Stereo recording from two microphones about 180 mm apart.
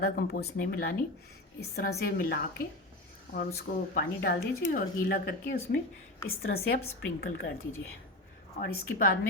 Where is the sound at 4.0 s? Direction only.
55° left (ahead or behind).